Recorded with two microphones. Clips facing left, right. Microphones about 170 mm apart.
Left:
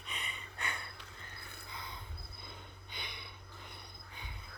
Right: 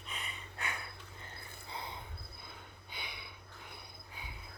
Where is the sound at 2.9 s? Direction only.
5° right (ahead or behind).